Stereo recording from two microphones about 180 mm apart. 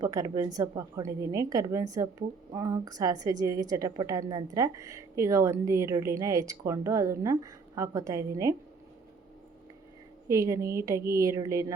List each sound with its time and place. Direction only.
0.0 s a woman's voice: 20° right (ahead or behind)
10.2 s a woman's voice: 15° right (ahead or behind)